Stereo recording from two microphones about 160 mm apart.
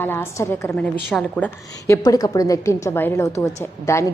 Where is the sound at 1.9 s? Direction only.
20° left (ahead or behind).